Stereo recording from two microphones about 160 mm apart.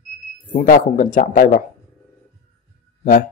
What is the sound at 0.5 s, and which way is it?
Speech, 60° left (ahead or behind).